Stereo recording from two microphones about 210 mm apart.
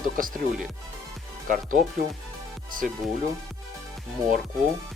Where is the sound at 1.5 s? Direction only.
40° right (ahead or behind).